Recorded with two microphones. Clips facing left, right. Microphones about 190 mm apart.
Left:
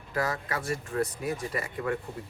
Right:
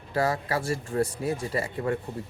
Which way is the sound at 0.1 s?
30° right (ahead or behind).